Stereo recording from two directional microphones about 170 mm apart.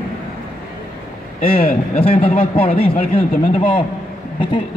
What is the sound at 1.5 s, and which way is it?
Speech, 55° left (ahead or behind).